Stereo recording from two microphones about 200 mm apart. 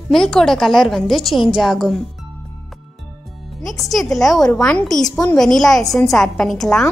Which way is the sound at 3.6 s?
Centre (ahead or behind).